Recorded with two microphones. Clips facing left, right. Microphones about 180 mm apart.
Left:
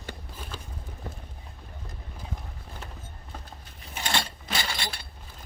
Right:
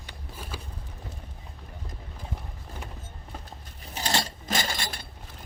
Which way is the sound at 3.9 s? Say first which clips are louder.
Right 1 dB; 40° right (ahead or behind).